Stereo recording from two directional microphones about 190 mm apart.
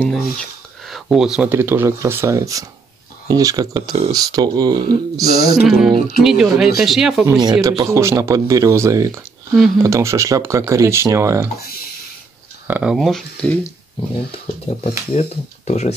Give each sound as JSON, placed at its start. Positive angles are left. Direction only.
{"t": 0.0, "sound": "speech", "side_deg": 5}
{"t": 5.7, "sound": "speech", "side_deg": 0}
{"t": 7.2, "sound": "speech", "side_deg": -20}
{"t": 12.6, "sound": "speech", "side_deg": -5}
{"t": 14.8, "sound": "speech", "side_deg": 35}